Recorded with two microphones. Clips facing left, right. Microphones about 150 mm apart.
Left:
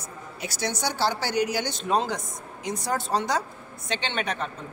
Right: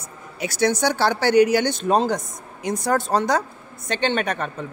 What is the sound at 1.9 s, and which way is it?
Speech, 40° right (ahead or behind).